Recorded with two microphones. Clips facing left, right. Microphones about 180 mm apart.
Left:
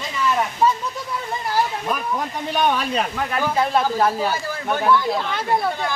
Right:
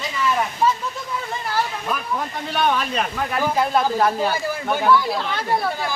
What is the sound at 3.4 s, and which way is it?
Speech, centre (ahead or behind).